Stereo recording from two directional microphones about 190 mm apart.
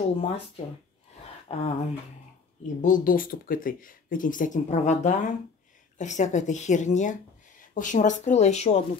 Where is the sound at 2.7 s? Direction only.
45° left (ahead or behind).